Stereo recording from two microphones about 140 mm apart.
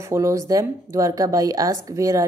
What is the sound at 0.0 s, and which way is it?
Speech, 20° right (ahead or behind).